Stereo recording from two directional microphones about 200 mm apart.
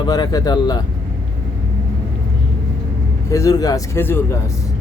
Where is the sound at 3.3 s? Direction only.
15° left (ahead or behind).